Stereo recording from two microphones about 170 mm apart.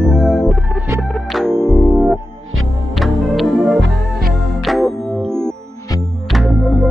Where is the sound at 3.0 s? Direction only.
Centre (ahead or behind).